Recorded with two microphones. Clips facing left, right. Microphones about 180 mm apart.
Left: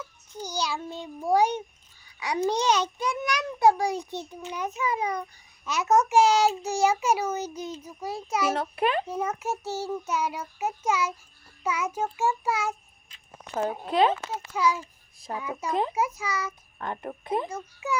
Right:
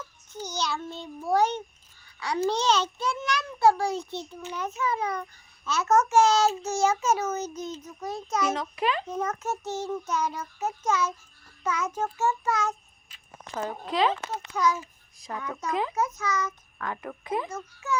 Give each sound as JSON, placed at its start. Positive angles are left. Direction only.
{"t": 0.4, "sound": "a child's voice", "side_deg": 10}
{"t": 2.1, "sound": "babbling", "side_deg": 15}
{"t": 2.5, "sound": "a child's voice", "side_deg": 15}
{"t": 8.7, "sound": "a child's voice", "side_deg": 55}
{"t": 9.0, "sound": "a child's voice", "side_deg": 10}
{"t": 13.9, "sound": "speech", "side_deg": 50}
{"t": 14.3, "sound": "a child's voice", "side_deg": 5}
{"t": 15.3, "sound": "speech", "side_deg": 30}
{"t": 16.0, "sound": "a child's voice", "side_deg": 10}
{"t": 17.1, "sound": "speech", "side_deg": 25}
{"t": 17.5, "sound": "a child's voice", "side_deg": 15}